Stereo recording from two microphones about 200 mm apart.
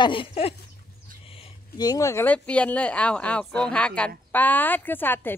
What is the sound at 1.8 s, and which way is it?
Speech, 15° left (ahead or behind).